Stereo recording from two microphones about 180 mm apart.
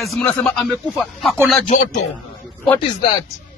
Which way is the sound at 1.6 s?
45° left (ahead or behind).